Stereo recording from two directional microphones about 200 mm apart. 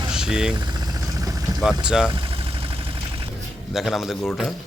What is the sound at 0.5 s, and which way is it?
Vehicle, 20° right (ahead or behind).